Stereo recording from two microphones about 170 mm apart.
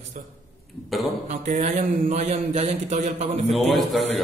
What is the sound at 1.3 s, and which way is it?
A man's voice, 45° right (ahead or behind).